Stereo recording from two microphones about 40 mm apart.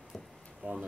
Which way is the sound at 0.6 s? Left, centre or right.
Right.